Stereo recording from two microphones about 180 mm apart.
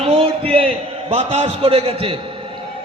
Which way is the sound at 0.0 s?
35° right (ahead or behind).